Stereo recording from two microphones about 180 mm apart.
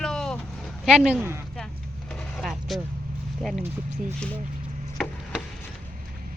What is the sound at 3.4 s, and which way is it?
Speech, centre (ahead or behind).